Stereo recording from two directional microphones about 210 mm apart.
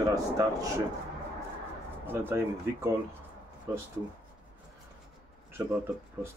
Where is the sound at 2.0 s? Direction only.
10° right (ahead or behind).